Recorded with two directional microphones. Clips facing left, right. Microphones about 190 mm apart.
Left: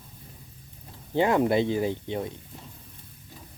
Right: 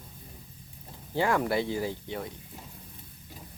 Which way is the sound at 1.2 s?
20° left (ahead or behind).